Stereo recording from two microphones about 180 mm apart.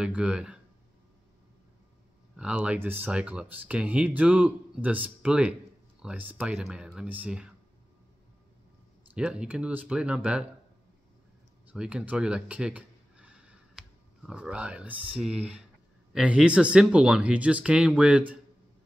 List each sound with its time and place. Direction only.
0.0 s speech: 5° right (ahead or behind)
2.3 s speech: 5° right (ahead or behind)
9.1 s speech: 5° right (ahead or behind)
11.7 s speech: 5° right (ahead or behind)